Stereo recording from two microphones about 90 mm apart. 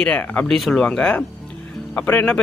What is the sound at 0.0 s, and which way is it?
Speech, 15° left (ahead or behind).